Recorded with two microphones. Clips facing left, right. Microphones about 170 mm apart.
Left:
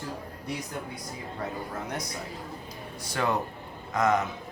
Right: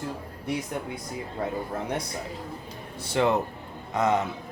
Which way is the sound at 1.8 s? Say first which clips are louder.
Right 4 dB; 30° right (ahead or behind).